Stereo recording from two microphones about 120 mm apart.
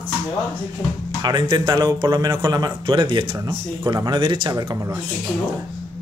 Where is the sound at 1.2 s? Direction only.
35° right (ahead or behind).